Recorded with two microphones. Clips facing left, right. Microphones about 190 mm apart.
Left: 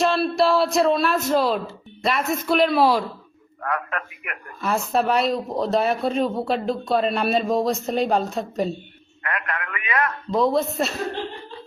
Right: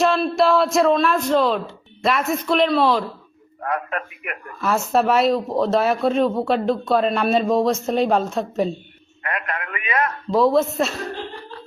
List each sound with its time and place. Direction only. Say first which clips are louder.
0.0 s a sound: right 2 dB; centre (ahead or behind)
1.5 s speech: right 1 dB; centre (ahead or behind)
3.6 s a man's voice: right 2 dB; 25° right (ahead or behind)
4.6 s a man's voice: right 3 dB; centre (ahead or behind)
9.2 s a man's voice: right 1 dB; 25° right (ahead or behind)
10.3 s a man's voice: right 4 dB; centre (ahead or behind)